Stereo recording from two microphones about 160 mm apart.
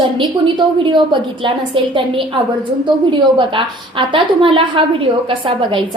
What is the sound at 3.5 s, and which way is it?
A woman's voice, 30° right (ahead or behind).